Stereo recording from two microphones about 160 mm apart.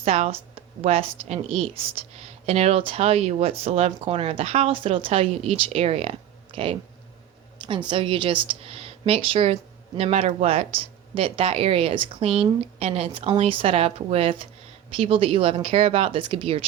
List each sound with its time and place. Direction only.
0.0 s a woman's voice: 40° right (ahead or behind)